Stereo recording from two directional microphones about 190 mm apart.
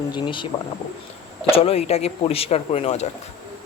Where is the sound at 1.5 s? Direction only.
30° left (ahead or behind).